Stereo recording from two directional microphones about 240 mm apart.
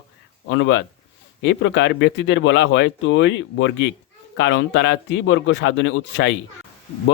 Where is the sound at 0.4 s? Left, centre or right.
Left.